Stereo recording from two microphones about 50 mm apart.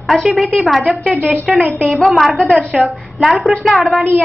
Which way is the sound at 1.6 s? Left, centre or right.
Right.